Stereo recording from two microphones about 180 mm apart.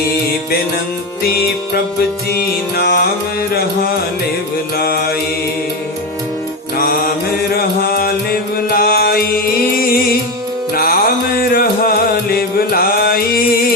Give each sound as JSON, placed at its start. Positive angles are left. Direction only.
{"t": 2.7, "sound": "music", "side_deg": 60}
{"t": 4.8, "sound": "music", "side_deg": 60}
{"t": 6.7, "sound": "mantra", "side_deg": 55}
{"t": 7.5, "sound": "music", "side_deg": 60}